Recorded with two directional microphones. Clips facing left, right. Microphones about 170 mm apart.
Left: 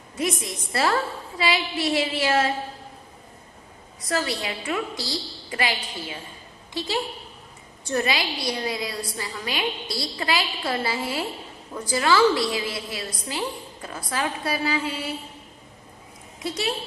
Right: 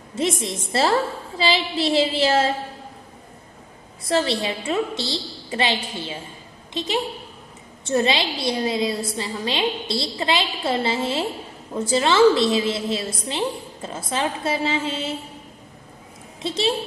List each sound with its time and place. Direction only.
0.1 s a woman's voice: 25° right (ahead or behind)
4.0 s a woman's voice: 30° right (ahead or behind)
16.3 s a woman's voice: 25° right (ahead or behind)